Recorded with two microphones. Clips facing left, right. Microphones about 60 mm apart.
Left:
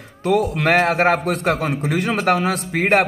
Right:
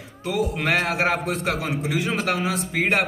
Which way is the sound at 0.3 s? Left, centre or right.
Left.